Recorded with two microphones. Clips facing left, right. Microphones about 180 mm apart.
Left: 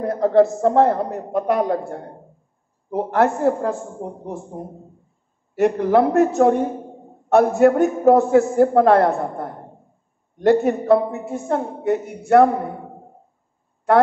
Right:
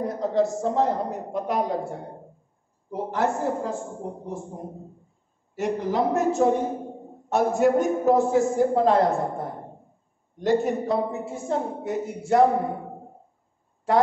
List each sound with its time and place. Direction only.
0.0 s a man's voice: 60° left (ahead or behind)
2.9 s a man's voice: 60° left (ahead or behind)
5.6 s a man's voice: 60° left (ahead or behind)